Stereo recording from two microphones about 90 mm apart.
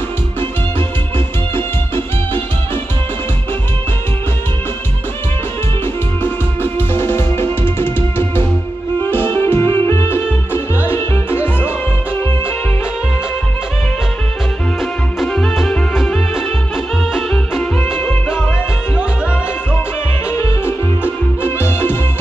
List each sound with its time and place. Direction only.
1.5 s music: 25° left (ahead or behind)
6.2 s music: 25° left (ahead or behind)
14.8 s music: 5° left (ahead or behind)
20.2 s music: 30° left (ahead or behind)